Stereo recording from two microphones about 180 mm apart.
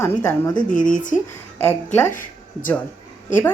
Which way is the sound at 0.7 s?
45° left (ahead or behind).